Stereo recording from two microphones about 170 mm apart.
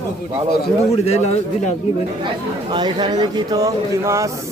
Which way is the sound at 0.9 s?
40° left (ahead or behind).